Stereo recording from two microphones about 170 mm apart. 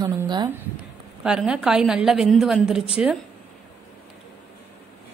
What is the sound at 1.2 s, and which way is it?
A woman's voice, 5° right (ahead or behind).